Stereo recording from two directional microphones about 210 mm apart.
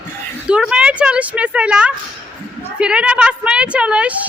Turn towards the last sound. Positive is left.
turn(degrees=-5)  # may be behind; listen again after turning